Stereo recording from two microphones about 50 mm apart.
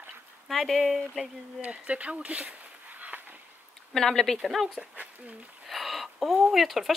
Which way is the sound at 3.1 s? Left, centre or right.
Right.